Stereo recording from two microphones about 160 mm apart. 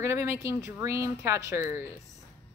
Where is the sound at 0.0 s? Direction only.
15° right (ahead or behind).